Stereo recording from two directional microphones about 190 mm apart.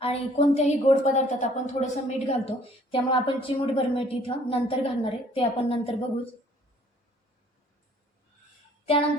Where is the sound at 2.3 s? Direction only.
30° left (ahead or behind).